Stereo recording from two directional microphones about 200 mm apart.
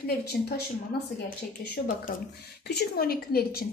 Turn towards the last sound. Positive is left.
turn(degrees=50)  # may be behind; listen again after turning